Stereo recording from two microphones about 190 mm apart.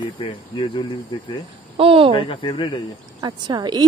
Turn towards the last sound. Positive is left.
turn(degrees=-20)  # may be behind; listen again after turning